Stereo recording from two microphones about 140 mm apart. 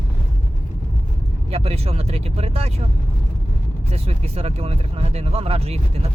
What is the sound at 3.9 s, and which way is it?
Speech, 45° right (ahead or behind).